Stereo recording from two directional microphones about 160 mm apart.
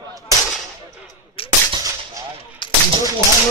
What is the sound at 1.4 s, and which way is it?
Gunshot, 35° left (ahead or behind).